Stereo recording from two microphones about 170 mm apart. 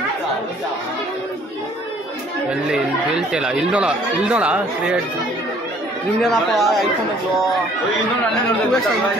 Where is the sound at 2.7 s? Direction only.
5° right (ahead or behind).